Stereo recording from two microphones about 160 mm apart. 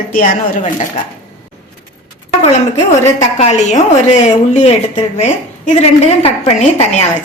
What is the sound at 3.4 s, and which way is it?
A woman's voice, 45° left (ahead or behind).